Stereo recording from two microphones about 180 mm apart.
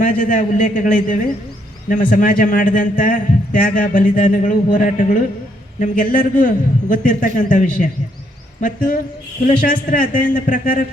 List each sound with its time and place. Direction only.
0.0 s a man's voice: 50° left (ahead or behind)